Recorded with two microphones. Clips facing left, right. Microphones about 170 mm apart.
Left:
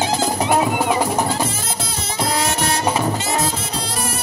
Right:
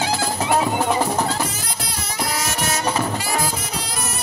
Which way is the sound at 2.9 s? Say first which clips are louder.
Left 2 dB; 25° left (ahead or behind).